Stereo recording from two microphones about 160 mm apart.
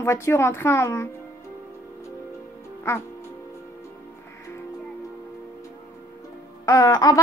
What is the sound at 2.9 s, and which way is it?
Speech, 15° left (ahead or behind).